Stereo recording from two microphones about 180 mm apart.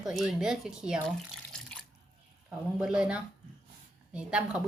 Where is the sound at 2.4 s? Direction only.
5° right (ahead or behind).